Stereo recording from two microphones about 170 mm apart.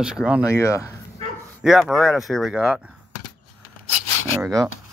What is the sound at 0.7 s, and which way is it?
Speech, 20° left (ahead or behind).